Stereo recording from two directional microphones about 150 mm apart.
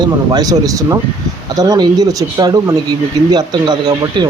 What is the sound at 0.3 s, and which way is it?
Speech, 25° right (ahead or behind).